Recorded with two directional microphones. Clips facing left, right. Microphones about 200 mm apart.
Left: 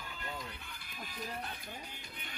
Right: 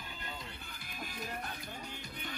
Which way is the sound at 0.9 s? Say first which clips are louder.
Right 1 dB; 45° right (ahead or behind).